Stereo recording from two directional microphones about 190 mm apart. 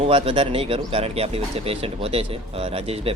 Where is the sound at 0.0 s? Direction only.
30° right (ahead or behind).